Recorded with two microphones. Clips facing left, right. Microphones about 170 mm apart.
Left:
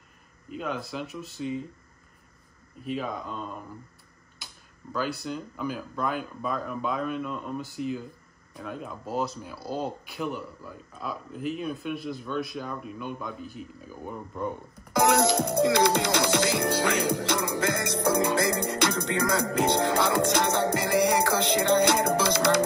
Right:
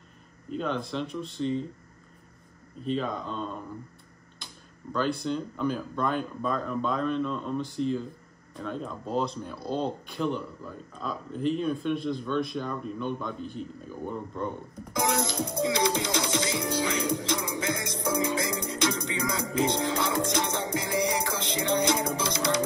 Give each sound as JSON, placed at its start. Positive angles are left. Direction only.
{"t": 0.5, "sound": "speech", "side_deg": 5}
{"t": 2.8, "sound": "speech", "side_deg": 10}
{"t": 4.4, "sound": "tick-tock", "side_deg": 5}
{"t": 4.9, "sound": "speech", "side_deg": 5}
{"t": 14.9, "sound": "music", "side_deg": 65}